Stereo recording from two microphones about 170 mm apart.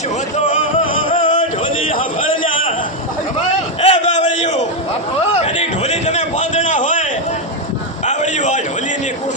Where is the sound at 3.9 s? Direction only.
45° left (ahead or behind).